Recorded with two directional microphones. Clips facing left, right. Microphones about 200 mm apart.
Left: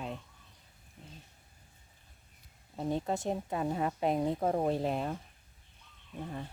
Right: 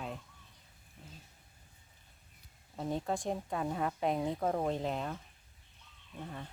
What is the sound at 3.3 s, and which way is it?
Speech, 5° left (ahead or behind).